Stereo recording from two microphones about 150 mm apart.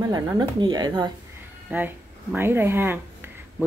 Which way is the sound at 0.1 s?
30° right (ahead or behind).